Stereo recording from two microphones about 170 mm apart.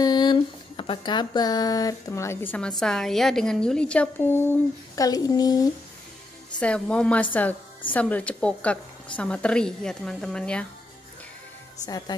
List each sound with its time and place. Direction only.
0.0 s a sound: 25° left (ahead or behind); by 2.7 s 10° left (ahead or behind)
2.8 s a woman's voice: 5° left (ahead or behind); by 5.7 s 20° left (ahead or behind)
6.6 s a woman's voice: 5° left (ahead or behind)